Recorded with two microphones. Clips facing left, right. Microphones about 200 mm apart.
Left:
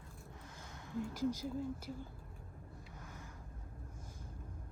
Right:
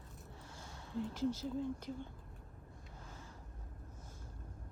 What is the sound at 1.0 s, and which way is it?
Speech, 15° left (ahead or behind).